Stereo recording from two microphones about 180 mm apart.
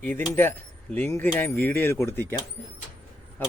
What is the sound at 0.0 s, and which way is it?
Speech, 10° left (ahead or behind).